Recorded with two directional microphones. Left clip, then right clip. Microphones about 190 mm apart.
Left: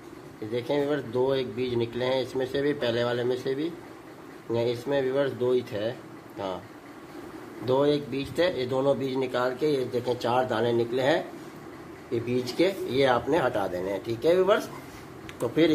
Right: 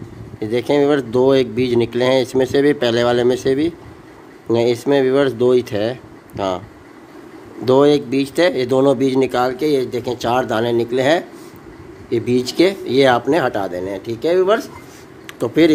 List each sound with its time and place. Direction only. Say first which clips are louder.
0.5 s speech: right 12 dB; 55° right (ahead or behind)
7.6 s a man's voice: right 11 dB; 55° right (ahead or behind)